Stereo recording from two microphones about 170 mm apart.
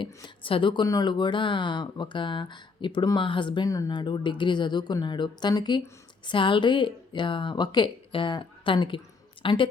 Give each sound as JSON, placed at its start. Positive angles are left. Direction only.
{"t": 0.0, "sound": "speech", "side_deg": 30}